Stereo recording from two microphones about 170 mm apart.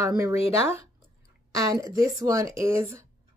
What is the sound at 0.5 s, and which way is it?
A woman's voice, 15° right (ahead or behind).